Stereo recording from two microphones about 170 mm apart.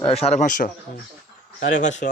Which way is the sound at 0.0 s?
35° left (ahead or behind).